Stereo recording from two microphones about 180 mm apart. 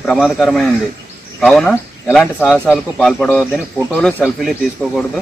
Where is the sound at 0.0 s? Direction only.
Centre (ahead or behind).